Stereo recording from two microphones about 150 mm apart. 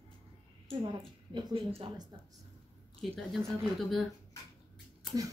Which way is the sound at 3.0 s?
Centre (ahead or behind).